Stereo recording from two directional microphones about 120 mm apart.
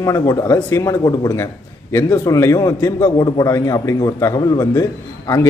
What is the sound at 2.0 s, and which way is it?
A man's voice, 25° left (ahead or behind).